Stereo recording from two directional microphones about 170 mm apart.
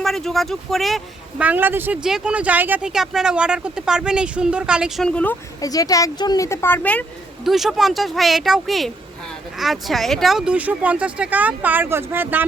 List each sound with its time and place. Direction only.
0.0 s speech: centre (ahead or behind)
5.0 s speech: 10° left (ahead or behind)
5.5 s speech: 20° left (ahead or behind)
7.4 s speech: centre (ahead or behind)